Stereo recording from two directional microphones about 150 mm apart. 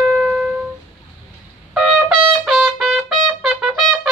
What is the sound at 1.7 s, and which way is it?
Trumpet, 5° right (ahead or behind).